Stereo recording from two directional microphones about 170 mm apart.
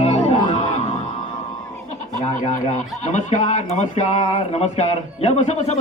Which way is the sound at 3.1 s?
45° left (ahead or behind).